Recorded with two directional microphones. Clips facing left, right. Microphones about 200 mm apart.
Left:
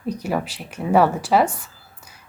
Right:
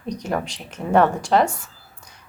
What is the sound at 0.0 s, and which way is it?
A woman's voice, 5° left (ahead or behind).